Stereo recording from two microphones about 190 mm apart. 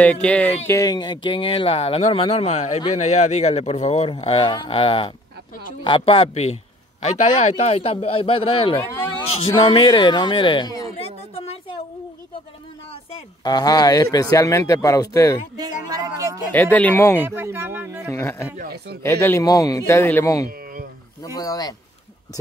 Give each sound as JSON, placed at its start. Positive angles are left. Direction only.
{"t": 0.0, "sound": "speech", "side_deg": 5}
{"t": 0.7, "sound": "a man's voice", "side_deg": 20}
{"t": 11.3, "sound": "a sound", "side_deg": 30}
{"t": 13.1, "sound": "speech", "side_deg": 20}
{"t": 15.9, "sound": "speech", "side_deg": -20}
{"t": 16.5, "sound": "speech", "side_deg": 10}
{"t": 17.2, "sound": "speech", "side_deg": -10}
{"t": 18.0, "sound": "speech", "side_deg": 15}
{"t": 18.6, "sound": "speech", "side_deg": -55}
{"t": 19.2, "sound": "speech", "side_deg": 15}